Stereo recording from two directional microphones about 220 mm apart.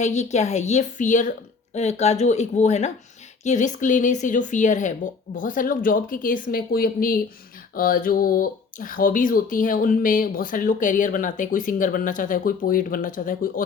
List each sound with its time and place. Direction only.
0.0 s speech: 30° left (ahead or behind)